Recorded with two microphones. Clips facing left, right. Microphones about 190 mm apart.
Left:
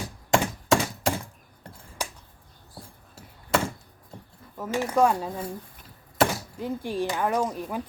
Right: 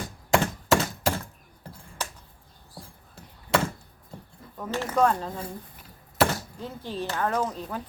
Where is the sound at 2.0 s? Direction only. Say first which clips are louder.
Left 1 dB; 10° left (ahead or behind).